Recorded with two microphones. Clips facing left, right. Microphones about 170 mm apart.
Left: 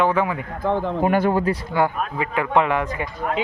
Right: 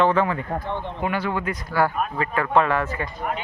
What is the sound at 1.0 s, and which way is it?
Speech, 45° left (ahead or behind).